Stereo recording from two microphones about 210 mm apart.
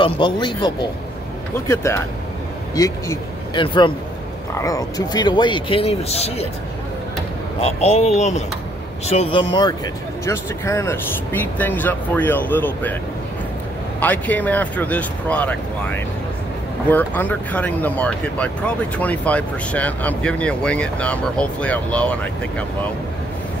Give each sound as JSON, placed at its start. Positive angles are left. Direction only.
{"t": 0.0, "sound": "speech", "side_deg": 20}
{"t": 7.6, "sound": "speech", "side_deg": 30}
{"t": 13.9, "sound": "speech", "side_deg": 10}